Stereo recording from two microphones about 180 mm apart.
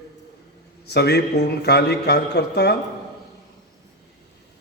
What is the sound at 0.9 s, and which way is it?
A man's voice, 65° left (ahead or behind).